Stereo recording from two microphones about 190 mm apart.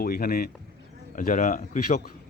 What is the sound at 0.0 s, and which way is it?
A man's voice, 50° left (ahead or behind).